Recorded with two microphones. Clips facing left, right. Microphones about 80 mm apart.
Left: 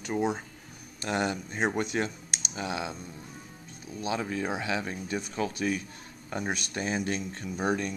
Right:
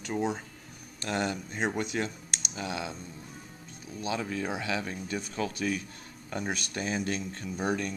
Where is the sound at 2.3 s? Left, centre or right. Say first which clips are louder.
Left 2 dB; left.